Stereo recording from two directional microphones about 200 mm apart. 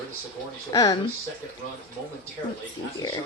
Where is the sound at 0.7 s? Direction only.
20° left (ahead or behind).